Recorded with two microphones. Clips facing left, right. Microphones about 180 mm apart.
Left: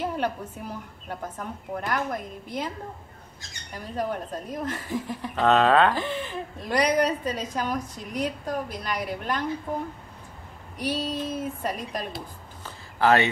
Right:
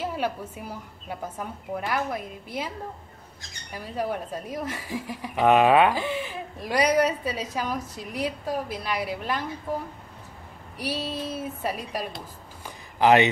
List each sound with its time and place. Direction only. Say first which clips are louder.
0.0 s speech: left 1 dB; 5° right (ahead or behind)
3.7 s speech: even; 10° right (ahead or behind)
10.8 s speech: left 2 dB; 5° right (ahead or behind)
12.6 s a sound: right 2 dB; 15° right (ahead or behind)